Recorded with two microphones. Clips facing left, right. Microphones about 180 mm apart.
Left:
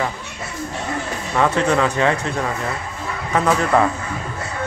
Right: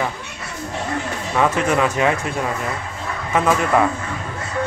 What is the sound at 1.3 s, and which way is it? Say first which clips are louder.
Speech: left 1 dB; 10° right (ahead or behind).